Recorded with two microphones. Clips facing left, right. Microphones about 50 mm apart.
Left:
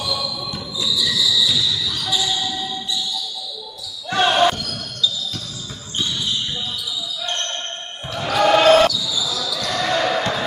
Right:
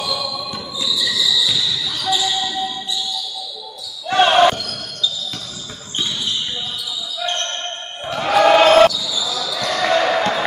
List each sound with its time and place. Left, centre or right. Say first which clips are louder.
0.0 s music: right 1 dB; centre
0.8 s cricket: even; centre
1.5 s basketball bounce: even; centre
4.1 s basketball bounce: right 4 dB; right
8.1 s basketball bounce: right 4 dB; right